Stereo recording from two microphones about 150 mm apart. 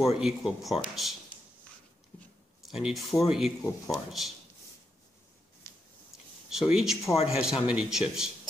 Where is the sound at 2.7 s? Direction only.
Centre (ahead or behind).